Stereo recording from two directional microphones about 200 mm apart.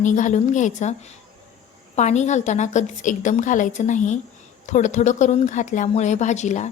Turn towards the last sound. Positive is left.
turn(degrees=35)  # may be behind; listen again after turning